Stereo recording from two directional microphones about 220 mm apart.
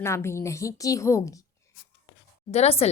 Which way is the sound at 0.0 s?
10° left (ahead or behind).